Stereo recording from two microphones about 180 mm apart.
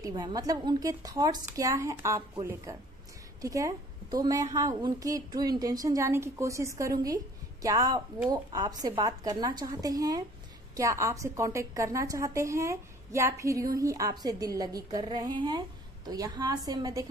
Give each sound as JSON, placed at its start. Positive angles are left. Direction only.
{"t": 0.0, "sound": "a woman's voice", "side_deg": -20}